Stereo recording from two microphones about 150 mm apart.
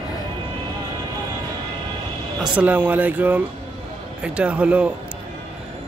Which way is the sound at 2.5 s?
10° right (ahead or behind).